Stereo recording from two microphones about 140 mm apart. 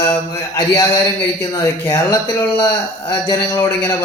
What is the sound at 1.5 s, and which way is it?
Speech, 30° left (ahead or behind).